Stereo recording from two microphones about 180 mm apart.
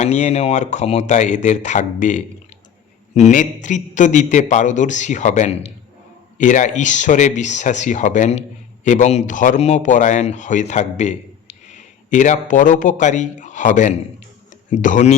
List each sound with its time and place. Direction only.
0.0 s a man's voice: 40° left (ahead or behind)